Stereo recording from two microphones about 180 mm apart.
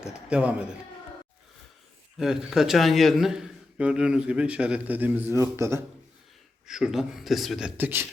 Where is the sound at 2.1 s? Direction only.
Centre (ahead or behind).